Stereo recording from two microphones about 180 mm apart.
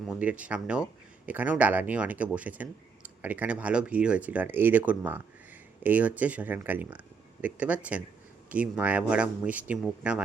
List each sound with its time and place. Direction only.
0.1 s speech: 10° right (ahead or behind)